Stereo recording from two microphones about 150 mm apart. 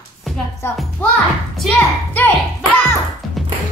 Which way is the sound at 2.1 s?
10° left (ahead or behind).